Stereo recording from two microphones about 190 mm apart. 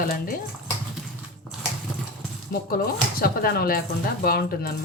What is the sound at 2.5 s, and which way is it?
Speech, 50° left (ahead or behind).